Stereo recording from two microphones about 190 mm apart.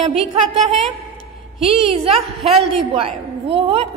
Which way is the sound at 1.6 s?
Centre (ahead or behind).